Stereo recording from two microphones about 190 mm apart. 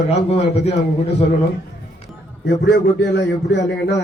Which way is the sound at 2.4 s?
65° left (ahead or behind).